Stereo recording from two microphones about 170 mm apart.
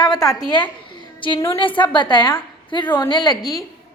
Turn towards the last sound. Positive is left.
turn(degrees=20)  # may be behind; listen again after turning